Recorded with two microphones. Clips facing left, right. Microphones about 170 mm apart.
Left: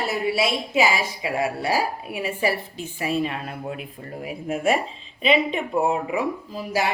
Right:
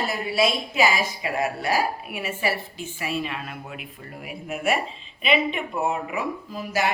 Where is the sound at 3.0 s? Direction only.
35° left (ahead or behind).